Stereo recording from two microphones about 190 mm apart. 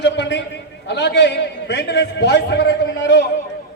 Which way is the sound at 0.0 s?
65° left (ahead or behind).